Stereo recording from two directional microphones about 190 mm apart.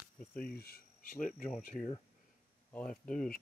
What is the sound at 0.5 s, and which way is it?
Cricket, 55° left (ahead or behind).